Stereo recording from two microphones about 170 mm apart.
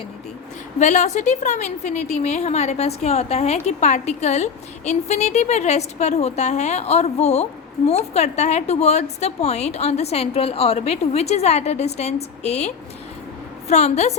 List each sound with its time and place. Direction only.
0.8 s a woman's voice: 45° left (ahead or behind)